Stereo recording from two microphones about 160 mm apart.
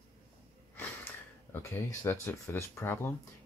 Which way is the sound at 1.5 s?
15° left (ahead or behind).